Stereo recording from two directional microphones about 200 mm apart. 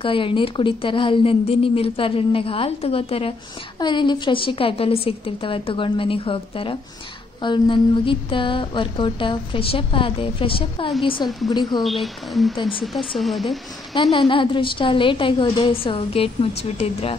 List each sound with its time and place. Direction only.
0.0 s mantra: 25° left (ahead or behind)
11.8 s speech: centre (ahead or behind)
14.1 s mantra: 25° left (ahead or behind)